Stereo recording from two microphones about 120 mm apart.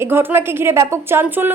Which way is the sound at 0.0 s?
20° right (ahead or behind).